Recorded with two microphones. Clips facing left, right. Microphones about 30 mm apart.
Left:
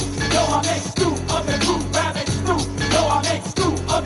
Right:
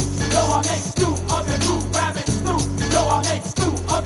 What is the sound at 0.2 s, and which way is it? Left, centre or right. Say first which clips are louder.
Music: left 1 dB; left.